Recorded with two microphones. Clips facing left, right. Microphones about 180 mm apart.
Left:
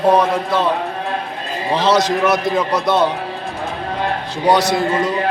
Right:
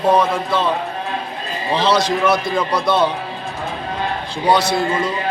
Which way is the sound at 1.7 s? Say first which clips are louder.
Left 1 dB; 15° left (ahead or behind).